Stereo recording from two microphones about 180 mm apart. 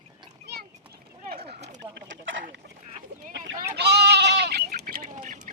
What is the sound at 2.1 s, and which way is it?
Chicken, 90° right.